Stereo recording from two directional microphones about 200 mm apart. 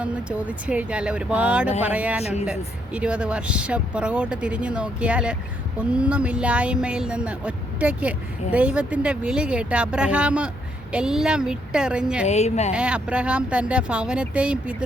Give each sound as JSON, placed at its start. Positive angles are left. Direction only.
{"t": 0.0, "sound": "speech", "side_deg": -5}
{"t": 12.3, "sound": "speech", "side_deg": 35}
{"t": 12.7, "sound": "speech", "side_deg": -5}